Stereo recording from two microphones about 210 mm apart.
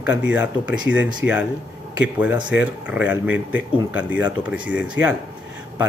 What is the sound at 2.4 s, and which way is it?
Speech, 5° right (ahead or behind).